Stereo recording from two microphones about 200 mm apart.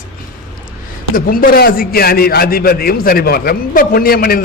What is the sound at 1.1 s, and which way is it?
A man's voice, 45° left (ahead or behind).